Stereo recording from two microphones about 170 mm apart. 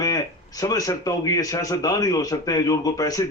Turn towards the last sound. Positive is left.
turn(degrees=20)  # may be behind; listen again after turning